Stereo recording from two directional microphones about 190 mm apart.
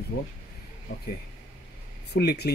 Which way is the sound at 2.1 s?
60° left (ahead or behind).